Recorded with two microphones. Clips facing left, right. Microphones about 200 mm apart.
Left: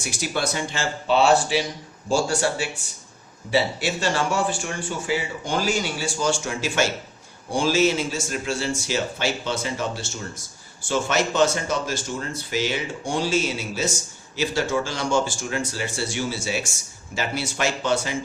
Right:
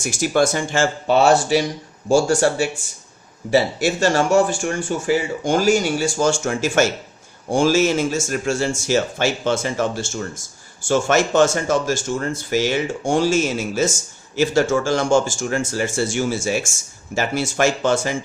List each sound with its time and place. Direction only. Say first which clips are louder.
0.0 s speech: right 8 dB; 45° right (ahead or behind)